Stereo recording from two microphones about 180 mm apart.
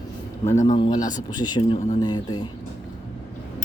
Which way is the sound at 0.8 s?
25° left (ahead or behind).